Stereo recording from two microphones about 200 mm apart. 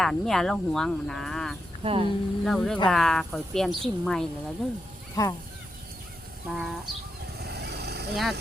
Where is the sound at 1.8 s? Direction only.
25° right (ahead or behind).